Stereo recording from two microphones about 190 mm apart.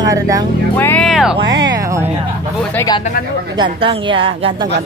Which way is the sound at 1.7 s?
15° right (ahead or behind).